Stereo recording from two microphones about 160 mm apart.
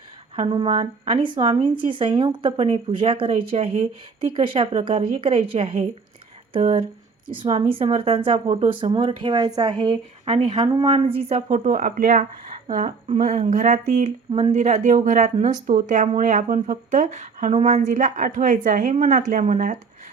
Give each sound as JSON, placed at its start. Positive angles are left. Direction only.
{"t": 0.3, "sound": "speech", "side_deg": -35}
{"t": 10.6, "sound": "speech", "side_deg": -30}
{"t": 11.4, "sound": "speech", "side_deg": -55}
{"t": 12.6, "sound": "speech", "side_deg": -50}